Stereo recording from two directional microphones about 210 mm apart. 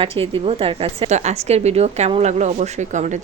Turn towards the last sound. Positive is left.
turn(degrees=-35)  # may be behind; listen again after turning